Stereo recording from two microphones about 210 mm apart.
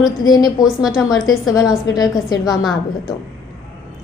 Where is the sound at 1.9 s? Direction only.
20° left (ahead or behind).